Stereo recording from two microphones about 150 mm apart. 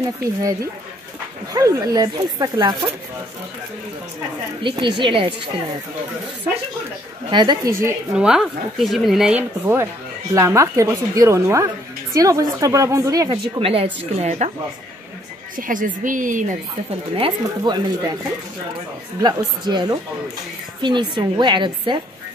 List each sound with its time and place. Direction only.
1.5 s a woman's voice: 25° right (ahead or behind)
4.6 s a woman's voice: 30° right (ahead or behind)
7.2 s a woman's voice: 30° right (ahead or behind)
8.2 s speech: 5° right (ahead or behind)
9.4 s a woman's voice: 15° right (ahead or behind)
13.6 s a woman's voice: 40° right (ahead or behind)
15.5 s a woman's voice: 65° right (ahead or behind)
17.1 s a woman's voice: 30° right (ahead or behind)
19.2 s a woman's voice: 30° right (ahead or behind)